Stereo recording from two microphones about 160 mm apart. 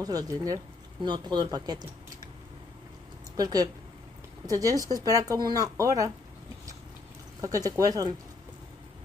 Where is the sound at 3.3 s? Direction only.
25° right (ahead or behind).